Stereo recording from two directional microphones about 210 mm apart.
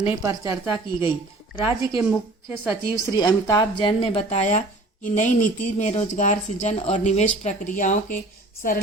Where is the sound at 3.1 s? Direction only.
20° left (ahead or behind).